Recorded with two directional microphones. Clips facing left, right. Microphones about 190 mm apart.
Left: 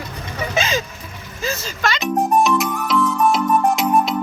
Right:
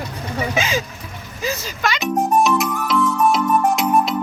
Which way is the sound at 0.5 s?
10° right (ahead or behind).